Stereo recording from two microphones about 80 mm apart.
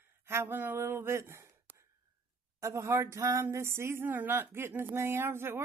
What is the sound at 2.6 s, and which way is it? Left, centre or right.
A woman's voice, right.